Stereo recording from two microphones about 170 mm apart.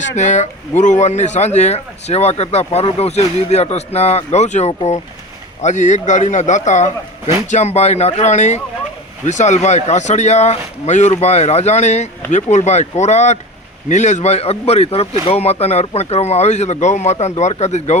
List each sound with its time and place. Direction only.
0.2 s speech: 45° left (ahead or behind)